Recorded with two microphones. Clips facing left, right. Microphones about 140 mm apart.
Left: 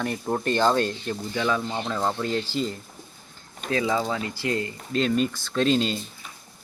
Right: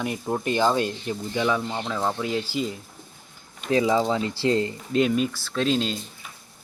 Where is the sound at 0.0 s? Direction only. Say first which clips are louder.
Even; 5° right (ahead or behind).